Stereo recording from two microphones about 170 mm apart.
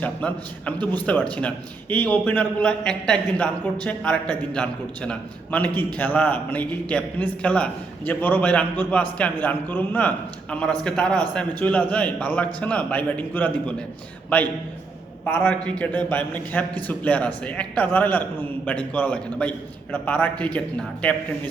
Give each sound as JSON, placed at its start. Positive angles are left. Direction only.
{"t": 0.0, "sound": "a man's voice", "side_deg": 10}